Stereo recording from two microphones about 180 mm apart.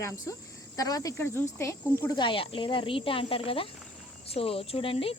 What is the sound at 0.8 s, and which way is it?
Speech, 20° left (ahead or behind).